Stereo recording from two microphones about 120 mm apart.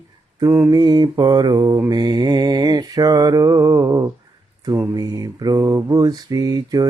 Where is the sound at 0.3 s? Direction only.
30° right (ahead or behind).